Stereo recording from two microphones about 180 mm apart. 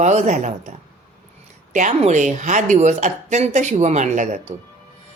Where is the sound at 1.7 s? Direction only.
40° right (ahead or behind).